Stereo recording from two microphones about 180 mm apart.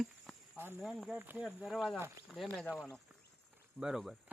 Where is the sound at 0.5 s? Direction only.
10° right (ahead or behind).